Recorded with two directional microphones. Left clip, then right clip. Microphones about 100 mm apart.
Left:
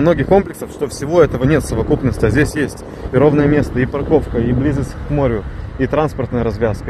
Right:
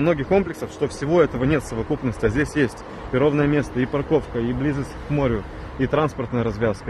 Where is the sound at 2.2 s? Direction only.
45° left (ahead or behind).